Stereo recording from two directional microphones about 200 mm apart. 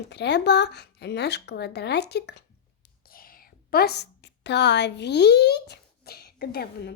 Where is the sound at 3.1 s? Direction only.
45° left (ahead or behind).